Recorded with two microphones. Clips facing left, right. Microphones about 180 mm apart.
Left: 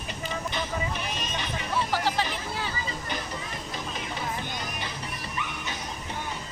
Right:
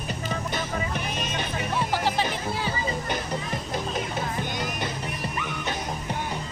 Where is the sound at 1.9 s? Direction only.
15° right (ahead or behind).